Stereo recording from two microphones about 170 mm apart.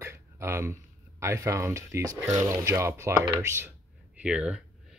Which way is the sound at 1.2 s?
15° right (ahead or behind).